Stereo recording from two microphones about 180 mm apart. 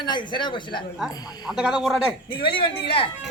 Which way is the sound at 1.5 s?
5° right (ahead or behind).